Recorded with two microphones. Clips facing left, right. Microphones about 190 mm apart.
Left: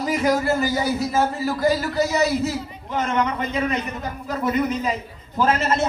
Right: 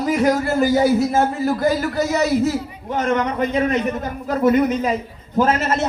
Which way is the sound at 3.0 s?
50° right (ahead or behind).